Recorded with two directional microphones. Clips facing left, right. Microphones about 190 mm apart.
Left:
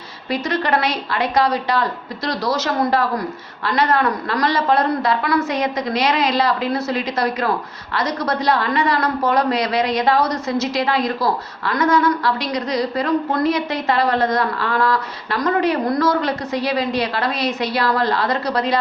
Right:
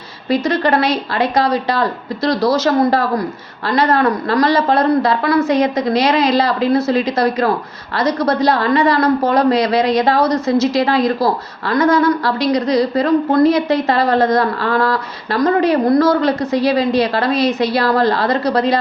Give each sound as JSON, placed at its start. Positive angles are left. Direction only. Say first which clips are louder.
{"t": 0.3, "sound": "a woman's voice", "louder": "right 5 dB", "side_deg": -35}